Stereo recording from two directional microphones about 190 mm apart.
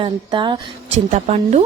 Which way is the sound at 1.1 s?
35° right (ahead or behind).